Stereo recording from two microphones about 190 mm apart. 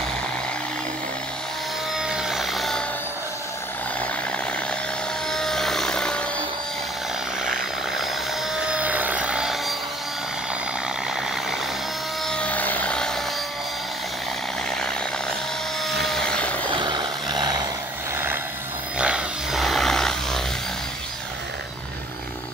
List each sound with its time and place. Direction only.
2.0 s music: centre (ahead or behind)
5.3 s music: 5° left (ahead or behind)
8.7 s music: 10° right (ahead or behind)
12.3 s a sound: 5° left (ahead or behind)
16.1 s vehicle: 5° left (ahead or behind)
16.7 s vehicle: 25° right (ahead or behind)
18.1 s vehicle: 10° right (ahead or behind)
18.9 s a sound: 5° right (ahead or behind)